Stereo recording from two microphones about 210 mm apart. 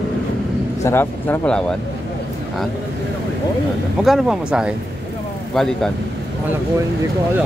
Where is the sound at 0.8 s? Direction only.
10° left (ahead or behind).